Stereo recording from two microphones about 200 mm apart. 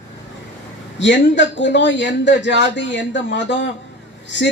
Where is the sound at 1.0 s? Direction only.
65° left (ahead or behind).